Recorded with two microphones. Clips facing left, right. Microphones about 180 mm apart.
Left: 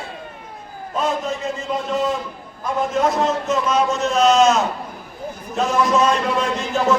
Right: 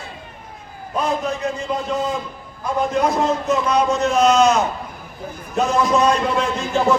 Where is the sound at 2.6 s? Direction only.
Centre (ahead or behind).